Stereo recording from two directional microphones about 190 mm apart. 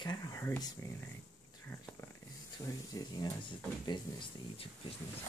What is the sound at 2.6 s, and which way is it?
Speech, 20° left (ahead or behind).